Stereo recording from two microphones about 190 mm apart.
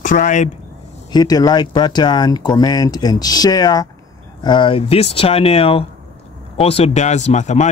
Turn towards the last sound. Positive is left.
turn(degrees=35)  # may be behind; listen again after turning